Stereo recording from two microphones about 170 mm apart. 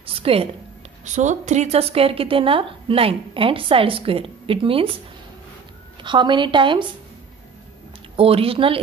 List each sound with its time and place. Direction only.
0.0 s a sound: 35° right (ahead or behind)
1.0 s speech: 45° right (ahead or behind)
6.0 s speech: 30° right (ahead or behind)
8.2 s speech: 35° right (ahead or behind)